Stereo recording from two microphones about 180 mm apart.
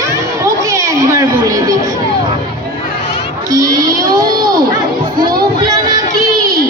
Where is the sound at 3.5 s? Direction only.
20° right (ahead or behind).